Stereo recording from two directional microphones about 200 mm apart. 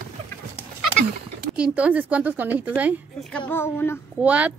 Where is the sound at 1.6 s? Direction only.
5° right (ahead or behind).